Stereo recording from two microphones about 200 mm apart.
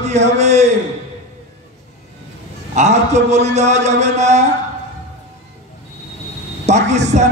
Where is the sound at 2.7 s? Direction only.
35° right (ahead or behind).